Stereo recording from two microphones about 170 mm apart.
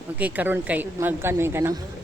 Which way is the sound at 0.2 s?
10° right (ahead or behind).